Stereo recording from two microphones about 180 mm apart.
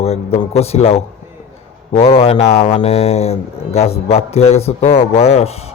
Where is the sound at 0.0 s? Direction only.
35° left (ahead or behind).